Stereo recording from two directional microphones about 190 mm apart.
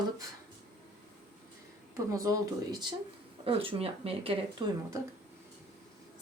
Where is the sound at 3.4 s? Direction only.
30° right (ahead or behind).